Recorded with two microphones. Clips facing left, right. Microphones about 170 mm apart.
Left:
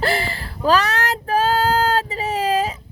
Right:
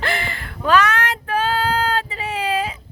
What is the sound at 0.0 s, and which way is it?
Child singing, 35° left (ahead or behind).